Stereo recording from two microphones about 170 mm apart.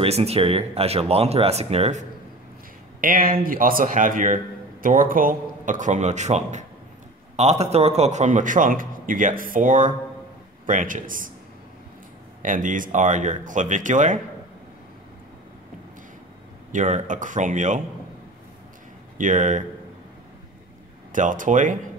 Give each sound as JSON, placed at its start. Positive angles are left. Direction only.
{"t": 0.0, "sound": "speech", "side_deg": -35}
{"t": 3.0, "sound": "a man's voice", "side_deg": -55}
{"t": 12.4, "sound": "a man's voice", "side_deg": -50}
{"t": 16.7, "sound": "a man's voice", "side_deg": -45}
{"t": 19.1, "sound": "a man's voice", "side_deg": -50}
{"t": 21.1, "sound": "a man's voice", "side_deg": -50}